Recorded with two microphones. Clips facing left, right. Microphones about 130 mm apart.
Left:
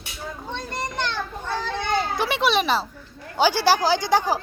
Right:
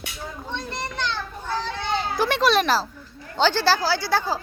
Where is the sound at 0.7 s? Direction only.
50° left (ahead or behind).